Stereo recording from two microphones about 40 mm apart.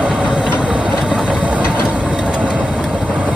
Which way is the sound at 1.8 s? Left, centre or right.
Right.